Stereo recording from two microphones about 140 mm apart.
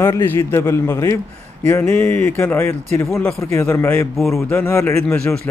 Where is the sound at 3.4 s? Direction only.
20° left (ahead or behind).